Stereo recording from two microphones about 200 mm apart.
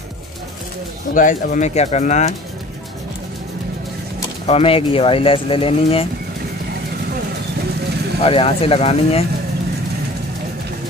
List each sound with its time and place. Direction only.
1.1 s speech: 40° left (ahead or behind)
4.5 s speech: 30° left (ahead or behind)
8.2 s speech: 30° left (ahead or behind)